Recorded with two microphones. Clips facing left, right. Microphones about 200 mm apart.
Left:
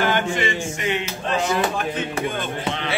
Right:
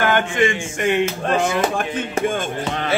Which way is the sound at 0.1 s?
50° right (ahead or behind).